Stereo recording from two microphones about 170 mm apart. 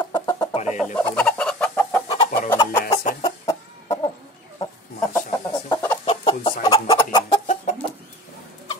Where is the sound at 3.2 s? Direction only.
25° left (ahead or behind).